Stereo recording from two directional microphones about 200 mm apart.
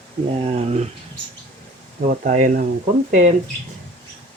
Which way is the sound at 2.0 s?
35° right (ahead or behind).